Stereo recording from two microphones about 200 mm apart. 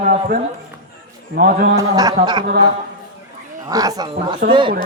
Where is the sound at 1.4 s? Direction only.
45° right (ahead or behind).